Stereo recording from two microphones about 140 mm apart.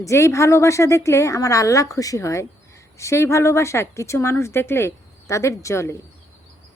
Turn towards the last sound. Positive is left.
turn(degrees=20)  # may be behind; listen again after turning